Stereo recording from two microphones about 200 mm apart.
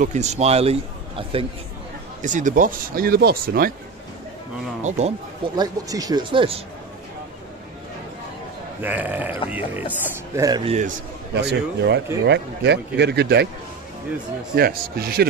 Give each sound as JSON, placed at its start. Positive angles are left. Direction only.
{"t": 0.0, "sound": "a man's voice", "side_deg": -35}
{"t": 2.2, "sound": "speech", "side_deg": -40}
{"t": 4.8, "sound": "a man's voice", "side_deg": -35}
{"t": 5.6, "sound": "speech", "side_deg": -20}
{"t": 8.8, "sound": "speech", "side_deg": -10}
{"t": 10.6, "sound": "a man's voice", "side_deg": -30}
{"t": 11.3, "sound": "speech", "side_deg": -60}
{"t": 14.5, "sound": "speech", "side_deg": -50}